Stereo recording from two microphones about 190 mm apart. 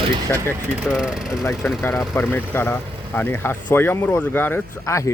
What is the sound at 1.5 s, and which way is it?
Speech, 15° left (ahead or behind).